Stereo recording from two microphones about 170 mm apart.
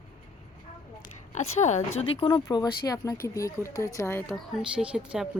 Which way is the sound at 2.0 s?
30° left (ahead or behind).